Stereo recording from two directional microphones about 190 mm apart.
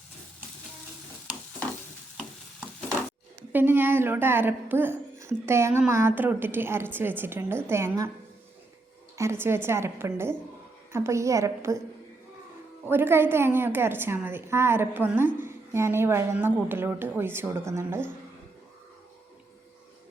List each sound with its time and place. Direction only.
3.5 s a woman's voice: 10° right (ahead or behind)
9.1 s a woman's voice: 15° right (ahead or behind)
12.8 s a woman's voice: 10° right (ahead or behind)